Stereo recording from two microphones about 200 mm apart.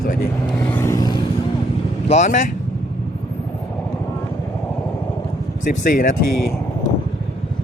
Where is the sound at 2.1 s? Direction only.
35° left (ahead or behind).